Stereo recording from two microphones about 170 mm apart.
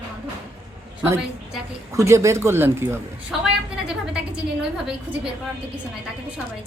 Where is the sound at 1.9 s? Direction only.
15° right (ahead or behind).